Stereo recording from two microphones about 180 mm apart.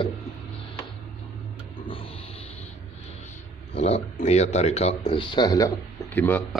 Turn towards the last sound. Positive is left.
turn(degrees=10)  # may be behind; listen again after turning